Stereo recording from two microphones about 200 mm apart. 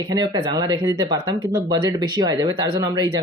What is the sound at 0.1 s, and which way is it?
Speech, 20° right (ahead or behind).